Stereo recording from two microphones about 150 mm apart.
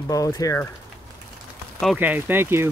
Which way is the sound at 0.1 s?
25° left (ahead or behind).